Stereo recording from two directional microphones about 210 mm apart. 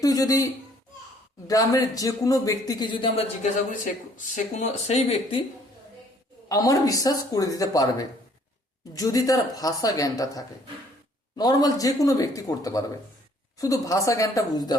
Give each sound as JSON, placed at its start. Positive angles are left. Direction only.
{"t": 0.0, "sound": "speech", "side_deg": 15}
{"t": 6.5, "sound": "speech", "side_deg": 15}